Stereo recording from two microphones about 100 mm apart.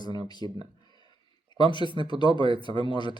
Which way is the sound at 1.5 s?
50° left (ahead or behind).